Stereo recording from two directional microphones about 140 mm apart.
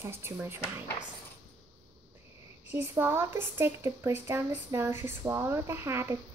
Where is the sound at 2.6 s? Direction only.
15° right (ahead or behind).